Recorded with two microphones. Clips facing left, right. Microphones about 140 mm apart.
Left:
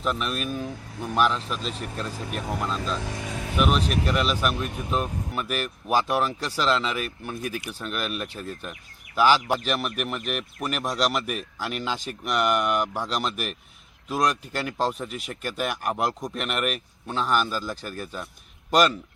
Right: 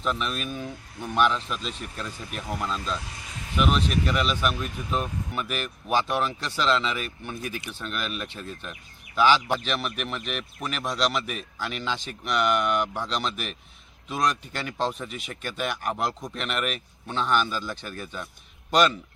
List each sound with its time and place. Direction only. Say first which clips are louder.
0.0 s speech: left 1 dB; 5° left (ahead or behind)
3.0 s vehicle: left 9 dB; 90° left
3.6 s speech: even; 5° left (ahead or behind)